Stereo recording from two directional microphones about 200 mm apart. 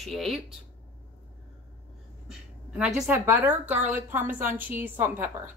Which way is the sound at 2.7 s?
5° right (ahead or behind).